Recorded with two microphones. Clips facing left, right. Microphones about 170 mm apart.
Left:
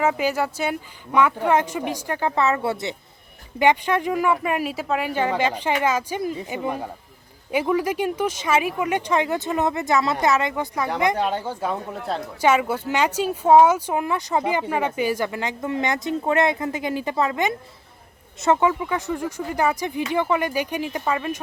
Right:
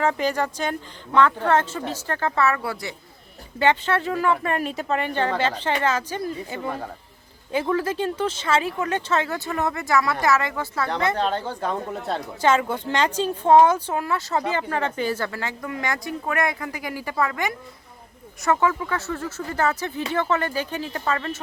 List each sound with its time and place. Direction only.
0.0 s speech: 10° left (ahead or behind)